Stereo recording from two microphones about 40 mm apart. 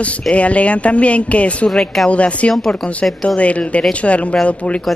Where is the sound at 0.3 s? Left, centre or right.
Left.